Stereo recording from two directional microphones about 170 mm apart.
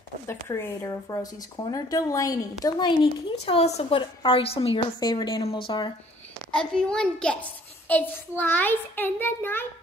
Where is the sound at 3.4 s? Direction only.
35° left (ahead or behind).